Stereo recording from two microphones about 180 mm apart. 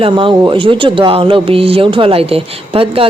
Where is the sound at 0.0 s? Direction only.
30° right (ahead or behind).